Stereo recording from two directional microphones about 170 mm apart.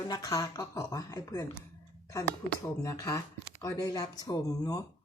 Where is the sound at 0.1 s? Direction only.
20° left (ahead or behind).